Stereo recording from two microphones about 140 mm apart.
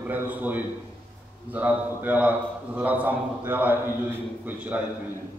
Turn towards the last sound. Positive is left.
turn(degrees=-10)  # may be behind; listen again after turning